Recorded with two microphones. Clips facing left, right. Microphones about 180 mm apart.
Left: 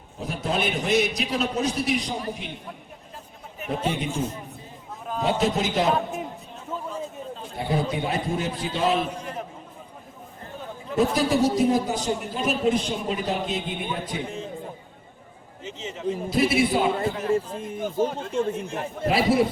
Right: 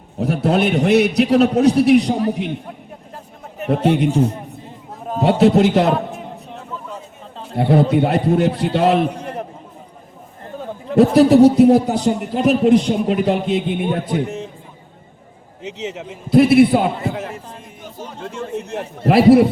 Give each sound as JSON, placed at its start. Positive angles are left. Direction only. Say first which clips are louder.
{"t": 0.2, "sound": "a man's voice", "louder": "right 10 dB", "side_deg": -65}
{"t": 3.6, "sound": "a man's voice", "louder": "right 11 dB", "side_deg": -65}
{"t": 6.6, "sound": "a sound", "louder": "left 4 dB", "side_deg": -65}
{"t": 10.5, "sound": "a sound", "louder": "right 8 dB", "side_deg": -50}
{"t": 10.9, "sound": "a man's voice", "louder": "right 11 dB", "side_deg": -65}
{"t": 15.6, "sound": "a man's voice", "louder": "right 2 dB", "side_deg": -75}